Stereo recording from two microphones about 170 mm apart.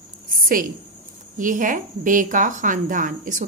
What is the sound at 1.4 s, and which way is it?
A woman's voice, 50° right (ahead or behind).